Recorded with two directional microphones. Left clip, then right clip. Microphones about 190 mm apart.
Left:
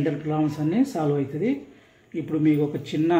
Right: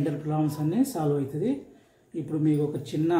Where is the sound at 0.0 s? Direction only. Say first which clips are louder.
Left 4 dB; 20° left (ahead or behind).